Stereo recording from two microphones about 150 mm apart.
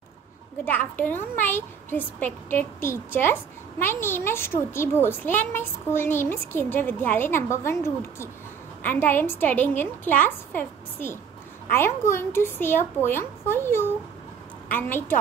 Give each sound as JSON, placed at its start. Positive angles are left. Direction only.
{"t": 0.7, "sound": "a child's voice", "side_deg": 10}